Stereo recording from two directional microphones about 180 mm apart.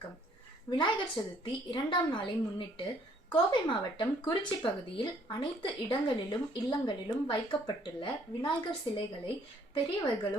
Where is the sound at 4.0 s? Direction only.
25° left (ahead or behind).